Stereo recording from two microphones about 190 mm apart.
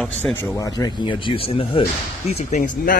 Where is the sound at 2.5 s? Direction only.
40° left (ahead or behind).